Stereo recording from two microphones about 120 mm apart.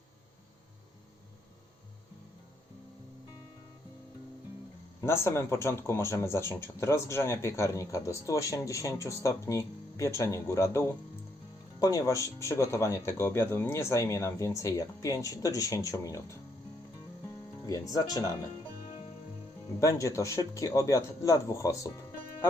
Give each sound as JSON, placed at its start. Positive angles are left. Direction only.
{"t": 4.9, "sound": "speech", "side_deg": 20}
{"t": 17.2, "sound": "music", "side_deg": 30}
{"t": 19.8, "sound": "speech", "side_deg": 25}